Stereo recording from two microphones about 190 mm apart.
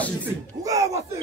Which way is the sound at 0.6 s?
15° right (ahead or behind).